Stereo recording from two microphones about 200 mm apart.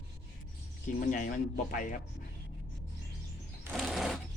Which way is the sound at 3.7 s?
Centre (ahead or behind).